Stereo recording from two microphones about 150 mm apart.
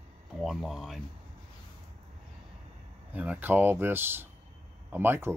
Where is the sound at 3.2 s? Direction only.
10° right (ahead or behind).